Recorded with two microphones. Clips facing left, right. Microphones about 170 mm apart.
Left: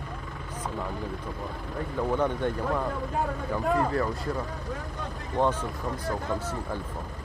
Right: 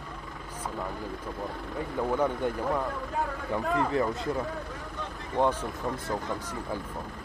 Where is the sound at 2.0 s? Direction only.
10° right (ahead or behind).